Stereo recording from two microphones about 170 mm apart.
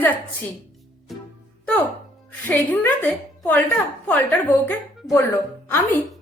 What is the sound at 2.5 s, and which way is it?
Speech, 10° left (ahead or behind).